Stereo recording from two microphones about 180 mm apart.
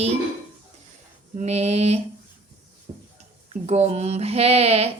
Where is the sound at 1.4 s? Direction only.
35° right (ahead or behind).